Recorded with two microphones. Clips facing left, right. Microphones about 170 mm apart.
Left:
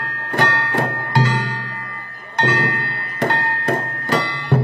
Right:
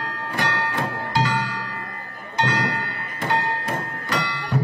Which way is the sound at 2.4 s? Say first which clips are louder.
Left 3 dB; 50° left (ahead or behind).